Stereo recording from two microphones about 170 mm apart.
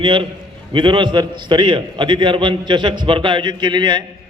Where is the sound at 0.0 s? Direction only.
30° right (ahead or behind).